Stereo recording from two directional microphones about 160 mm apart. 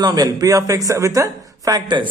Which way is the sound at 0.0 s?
25° right (ahead or behind).